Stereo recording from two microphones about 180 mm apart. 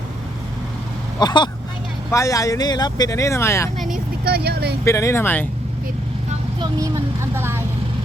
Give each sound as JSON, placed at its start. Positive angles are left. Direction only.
{"t": 1.2, "sound": "speech", "side_deg": 25}
{"t": 3.8, "sound": "vehicle", "side_deg": 0}
{"t": 4.3, "sound": "speech", "side_deg": -60}
{"t": 4.9, "sound": "speech", "side_deg": 15}
{"t": 6.6, "sound": "speech", "side_deg": -20}